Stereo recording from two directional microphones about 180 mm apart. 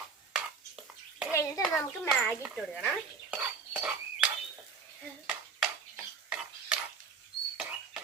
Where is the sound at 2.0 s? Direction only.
10° left (ahead or behind).